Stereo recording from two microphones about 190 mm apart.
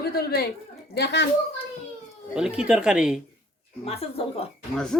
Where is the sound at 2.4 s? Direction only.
5° right (ahead or behind).